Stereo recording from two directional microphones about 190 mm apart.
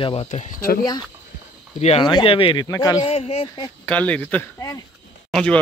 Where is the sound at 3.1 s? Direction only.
30° left (ahead or behind).